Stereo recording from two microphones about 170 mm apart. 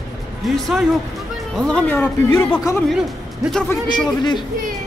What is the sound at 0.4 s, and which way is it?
Speech, centre (ahead or behind).